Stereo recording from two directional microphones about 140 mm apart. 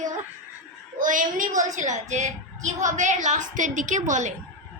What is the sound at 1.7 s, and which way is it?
A woman's voice, 60° right (ahead or behind).